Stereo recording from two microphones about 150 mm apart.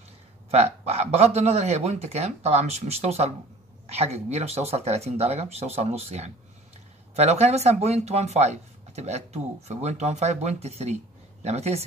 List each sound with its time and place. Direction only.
0.5 s speech: 45° right (ahead or behind)